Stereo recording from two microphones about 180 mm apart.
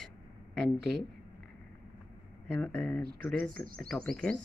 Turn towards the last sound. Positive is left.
turn(degrees=5)  # may be behind; listen again after turning